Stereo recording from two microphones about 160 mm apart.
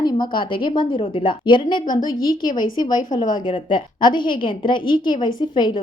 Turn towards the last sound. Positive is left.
turn(degrees=30)  # may be behind; listen again after turning